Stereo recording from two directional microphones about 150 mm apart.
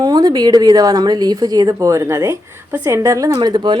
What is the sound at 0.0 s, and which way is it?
A woman's voice, 25° right (ahead or behind).